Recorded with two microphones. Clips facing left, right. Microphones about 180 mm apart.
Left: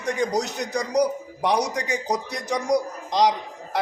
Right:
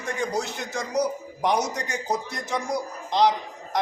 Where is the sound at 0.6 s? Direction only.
40° left (ahead or behind).